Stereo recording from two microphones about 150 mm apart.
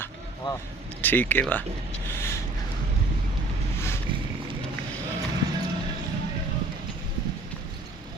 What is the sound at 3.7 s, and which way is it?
Vehicle, 15° left (ahead or behind).